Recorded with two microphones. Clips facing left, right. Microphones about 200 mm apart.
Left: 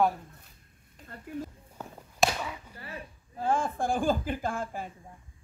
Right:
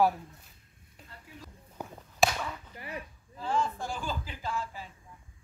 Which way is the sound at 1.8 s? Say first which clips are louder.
Right 2 dB; 15° right (ahead or behind).